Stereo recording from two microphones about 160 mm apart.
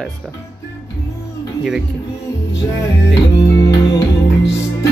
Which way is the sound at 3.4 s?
20° left (ahead or behind).